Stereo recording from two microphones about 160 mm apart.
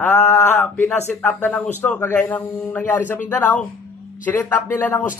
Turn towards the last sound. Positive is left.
turn(degrees=10)  # may be behind; listen again after turning